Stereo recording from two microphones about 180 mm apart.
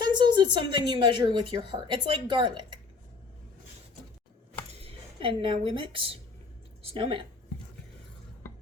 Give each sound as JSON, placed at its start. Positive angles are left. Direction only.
{"t": 0.0, "sound": "a woman's voice", "side_deg": -25}
{"t": 4.7, "sound": "a woman's voice", "side_deg": -30}